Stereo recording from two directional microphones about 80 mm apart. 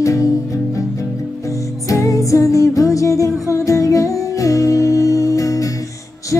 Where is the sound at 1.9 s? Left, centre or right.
Left.